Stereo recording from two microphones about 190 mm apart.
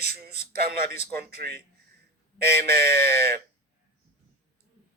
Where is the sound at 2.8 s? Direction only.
60° right (ahead or behind).